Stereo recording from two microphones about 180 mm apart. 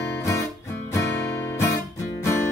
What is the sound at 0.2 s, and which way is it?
Guitar, 15° left (ahead or behind).